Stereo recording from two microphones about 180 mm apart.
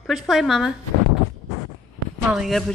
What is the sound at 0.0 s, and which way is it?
Speech, centre (ahead or behind).